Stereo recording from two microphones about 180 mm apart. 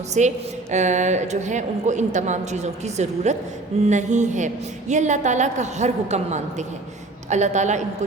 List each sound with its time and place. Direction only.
0.1 s a woman's voice: 40° right (ahead or behind)